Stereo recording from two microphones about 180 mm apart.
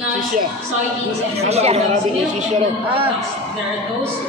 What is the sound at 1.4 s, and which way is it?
Speech, 35° right (ahead or behind).